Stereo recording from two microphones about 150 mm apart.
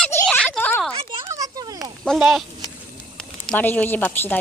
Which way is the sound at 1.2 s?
20° right (ahead or behind).